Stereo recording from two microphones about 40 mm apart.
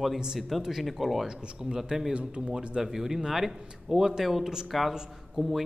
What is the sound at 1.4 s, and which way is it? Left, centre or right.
Speech, right.